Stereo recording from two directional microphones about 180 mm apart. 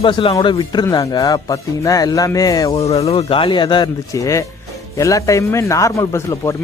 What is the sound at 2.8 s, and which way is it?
A man's voice, 35° left (ahead or behind).